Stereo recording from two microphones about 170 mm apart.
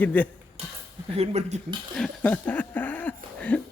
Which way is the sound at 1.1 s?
35° right (ahead or behind).